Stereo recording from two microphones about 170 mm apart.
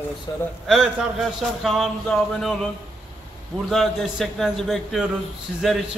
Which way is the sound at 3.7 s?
Centre (ahead or behind).